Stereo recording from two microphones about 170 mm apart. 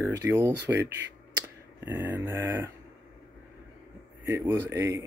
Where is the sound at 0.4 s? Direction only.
15° right (ahead or behind).